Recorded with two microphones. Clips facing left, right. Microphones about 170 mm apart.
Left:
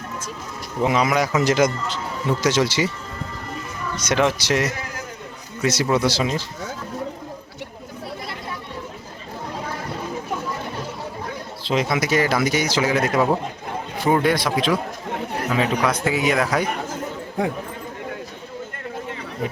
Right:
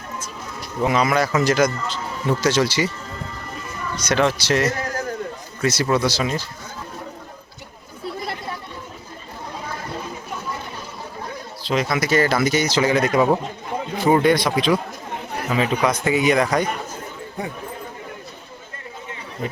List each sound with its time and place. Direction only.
0.8 s speech: 15° left (ahead or behind)
1.5 s speech: 20° left (ahead or behind)
3.9 s speech: 20° left (ahead or behind)
11.6 s speech: 25° left (ahead or behind); by 16.6 s 5° left (ahead or behind)